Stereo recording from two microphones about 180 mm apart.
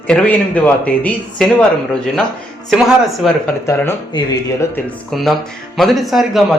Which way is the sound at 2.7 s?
Centre (ahead or behind).